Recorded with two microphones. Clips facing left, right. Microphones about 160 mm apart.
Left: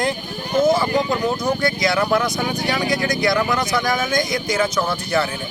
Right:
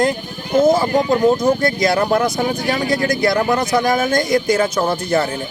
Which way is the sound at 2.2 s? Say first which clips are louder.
Right 4 dB; 25° right (ahead or behind).